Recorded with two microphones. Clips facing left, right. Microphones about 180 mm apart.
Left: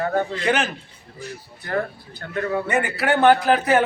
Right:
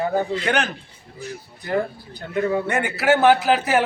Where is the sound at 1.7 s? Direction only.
15° right (ahead or behind).